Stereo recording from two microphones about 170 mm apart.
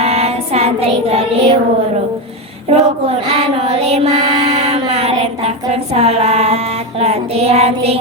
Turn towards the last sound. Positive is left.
turn(degrees=-35)  # may be behind; listen again after turning